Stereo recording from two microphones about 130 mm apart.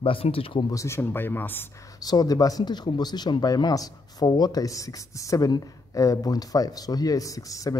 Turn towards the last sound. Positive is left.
turn(degrees=25)  # may be behind; listen again after turning